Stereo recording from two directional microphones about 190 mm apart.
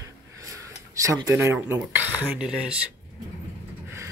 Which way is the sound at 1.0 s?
15° right (ahead or behind).